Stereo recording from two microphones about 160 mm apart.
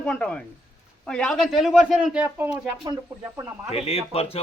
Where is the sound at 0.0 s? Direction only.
5° left (ahead or behind); by 2.5 s 10° right (ahead or behind).